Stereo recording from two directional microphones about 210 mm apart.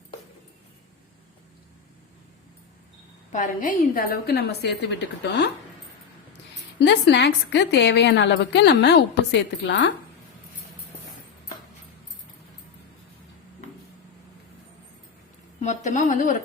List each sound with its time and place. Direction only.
3.3 s a woman's voice: 40° left (ahead or behind); by 5.5 s 55° left (ahead or behind)
6.8 s a woman's voice: 55° left (ahead or behind)
15.6 s speech: 35° left (ahead or behind)